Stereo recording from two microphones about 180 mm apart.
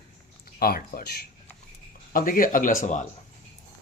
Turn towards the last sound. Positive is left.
turn(degrees=45)  # may be behind; listen again after turning